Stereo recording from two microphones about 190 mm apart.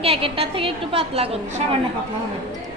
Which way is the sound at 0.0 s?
30° right (ahead or behind).